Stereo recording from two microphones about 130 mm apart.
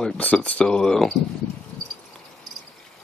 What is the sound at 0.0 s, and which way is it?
Speech, 10° left (ahead or behind).